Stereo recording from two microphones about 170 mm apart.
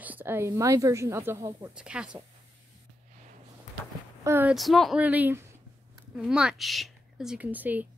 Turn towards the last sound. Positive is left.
turn(degrees=-10)  # may be behind; listen again after turning